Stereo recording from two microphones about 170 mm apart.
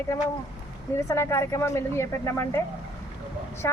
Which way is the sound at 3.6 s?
20° left (ahead or behind).